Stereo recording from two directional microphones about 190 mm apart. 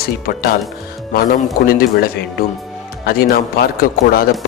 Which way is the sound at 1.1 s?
50° left (ahead or behind).